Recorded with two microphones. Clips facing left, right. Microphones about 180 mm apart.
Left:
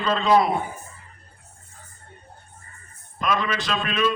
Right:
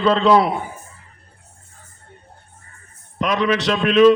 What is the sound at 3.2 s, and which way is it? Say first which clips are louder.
Speech: right 6 dB; 70° right (ahead or behind).